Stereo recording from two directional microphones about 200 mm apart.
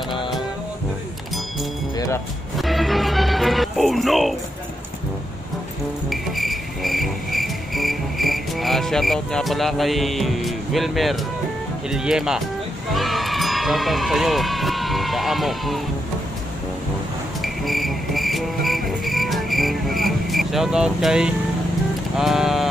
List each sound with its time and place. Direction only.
2.0 s music: 15° left (ahead or behind)
2.5 s music: centre (ahead or behind)
6.0 s cricket: centre (ahead or behind)
11.9 s vehicle: centre (ahead or behind)
12.9 s speech: centre (ahead or behind)
17.4 s music: centre (ahead or behind)
22.1 s vehicle: centre (ahead or behind)